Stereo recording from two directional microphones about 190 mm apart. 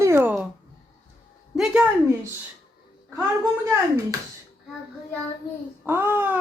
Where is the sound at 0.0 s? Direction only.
10° right (ahead or behind).